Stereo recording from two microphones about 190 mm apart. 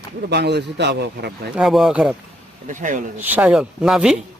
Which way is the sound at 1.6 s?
Centre (ahead or behind).